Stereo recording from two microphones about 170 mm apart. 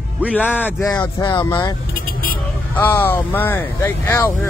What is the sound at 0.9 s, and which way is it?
Speech, 30° left (ahead or behind).